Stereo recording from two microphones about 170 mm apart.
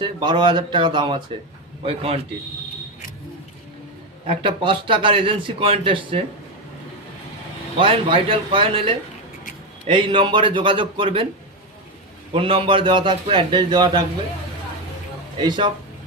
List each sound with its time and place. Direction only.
0.0 s a man's voice: 25° right (ahead or behind)
4.3 s a man's voice: 30° right (ahead or behind)
7.8 s a man's voice: 30° right (ahead or behind)
12.3 s a man's voice: 30° right (ahead or behind)
15.4 s a man's voice: 30° right (ahead or behind)